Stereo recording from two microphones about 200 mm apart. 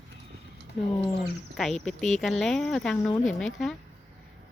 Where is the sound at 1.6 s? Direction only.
Centre (ahead or behind).